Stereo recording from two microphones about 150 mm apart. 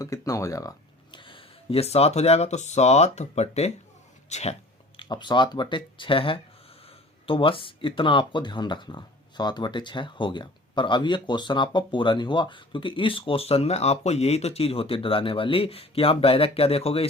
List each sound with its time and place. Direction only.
0.0 s speech: 20° left (ahead or behind)
1.1 s speech: 35° left (ahead or behind)
4.9 s speech: 30° left (ahead or behind)